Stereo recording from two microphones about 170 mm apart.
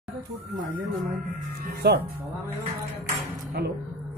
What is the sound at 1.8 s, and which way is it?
Speech, 75° right (ahead or behind).